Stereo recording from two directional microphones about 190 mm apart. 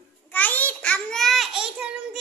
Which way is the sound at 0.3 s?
10° left (ahead or behind).